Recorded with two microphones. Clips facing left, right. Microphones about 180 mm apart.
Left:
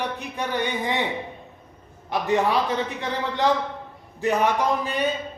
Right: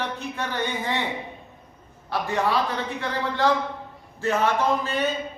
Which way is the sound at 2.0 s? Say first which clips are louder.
Left 3 dB; 20° left (ahead or behind).